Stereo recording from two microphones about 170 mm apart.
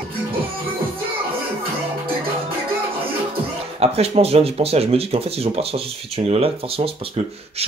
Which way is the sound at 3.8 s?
35° right (ahead or behind).